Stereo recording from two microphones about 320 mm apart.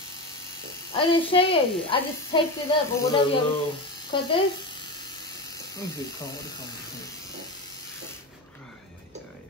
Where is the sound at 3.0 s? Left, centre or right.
Centre.